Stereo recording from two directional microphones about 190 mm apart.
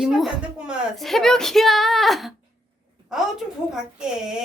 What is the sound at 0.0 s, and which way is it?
Speech, centre (ahead or behind).